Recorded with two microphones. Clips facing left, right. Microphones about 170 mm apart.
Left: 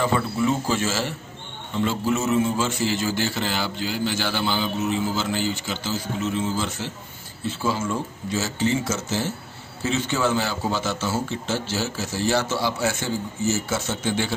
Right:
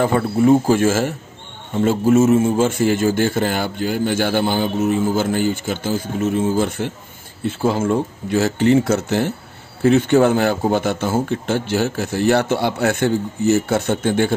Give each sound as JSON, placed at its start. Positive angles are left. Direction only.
{"t": 0.0, "sound": "a man's voice", "side_deg": -50}